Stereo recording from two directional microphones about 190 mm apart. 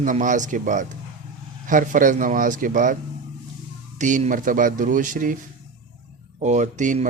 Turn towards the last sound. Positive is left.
turn(degrees=-40)  # may be behind; listen again after turning